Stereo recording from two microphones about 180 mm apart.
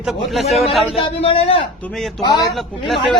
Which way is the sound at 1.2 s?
35° left (ahead or behind).